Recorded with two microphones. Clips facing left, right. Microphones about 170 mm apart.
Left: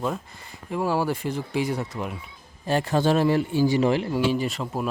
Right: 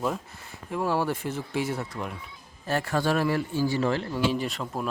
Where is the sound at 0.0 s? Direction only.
Centre (ahead or behind).